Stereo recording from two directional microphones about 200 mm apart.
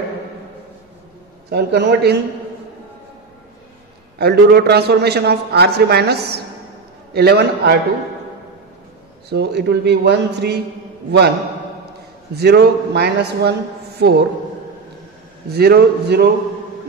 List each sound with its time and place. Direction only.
1.5 s a man's voice: 55° right (ahead or behind)
4.2 s a man's voice: 55° right (ahead or behind)
9.3 s a man's voice: 55° right (ahead or behind)
12.4 s a man's voice: 55° right (ahead or behind)
15.5 s a man's voice: 50° right (ahead or behind)